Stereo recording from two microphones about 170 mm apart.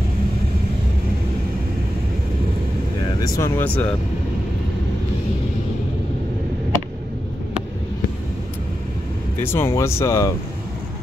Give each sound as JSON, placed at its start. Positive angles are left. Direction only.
{"t": 3.2, "sound": "speech", "side_deg": 20}
{"t": 9.4, "sound": "speech", "side_deg": 15}